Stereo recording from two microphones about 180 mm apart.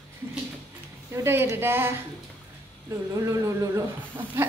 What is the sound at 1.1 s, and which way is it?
Speech, 15° right (ahead or behind).